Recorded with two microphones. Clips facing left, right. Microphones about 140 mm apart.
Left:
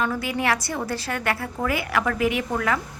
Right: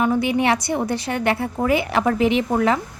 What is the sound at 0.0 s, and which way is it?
A woman's voice, 20° right (ahead or behind).